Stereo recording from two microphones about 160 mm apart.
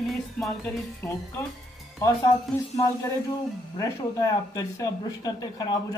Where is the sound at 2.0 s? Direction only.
20° left (ahead or behind).